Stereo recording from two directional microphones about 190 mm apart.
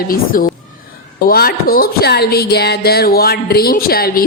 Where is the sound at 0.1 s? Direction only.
45° left (ahead or behind).